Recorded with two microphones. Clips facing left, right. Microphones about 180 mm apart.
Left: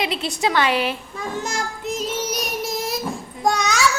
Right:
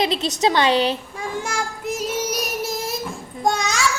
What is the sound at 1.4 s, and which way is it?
Child singing, 10° right (ahead or behind).